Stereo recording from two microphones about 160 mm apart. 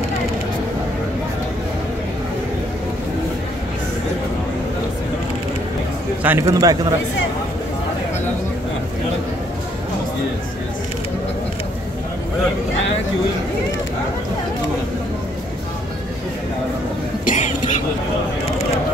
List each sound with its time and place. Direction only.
6.2 s speech: 15° right (ahead or behind)
17.2 s cough: 55° left (ahead or behind)